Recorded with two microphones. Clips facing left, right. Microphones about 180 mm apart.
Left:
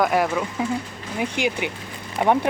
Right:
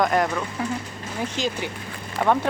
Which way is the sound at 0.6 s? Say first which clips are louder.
Left 3 dB; 15° left (ahead or behind).